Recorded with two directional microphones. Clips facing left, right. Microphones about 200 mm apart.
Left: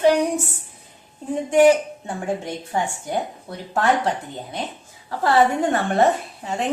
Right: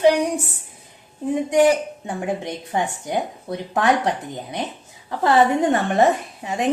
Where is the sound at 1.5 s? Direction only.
15° right (ahead or behind).